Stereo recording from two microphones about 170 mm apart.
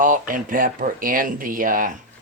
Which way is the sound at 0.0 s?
50° right (ahead or behind).